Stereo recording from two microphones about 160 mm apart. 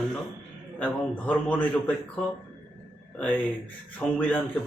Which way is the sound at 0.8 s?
10° left (ahead or behind).